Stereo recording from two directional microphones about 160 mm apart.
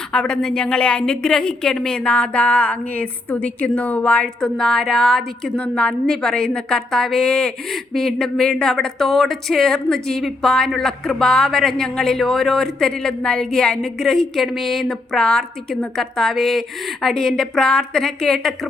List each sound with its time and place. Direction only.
0.1 s a woman's voice: 5° left (ahead or behind)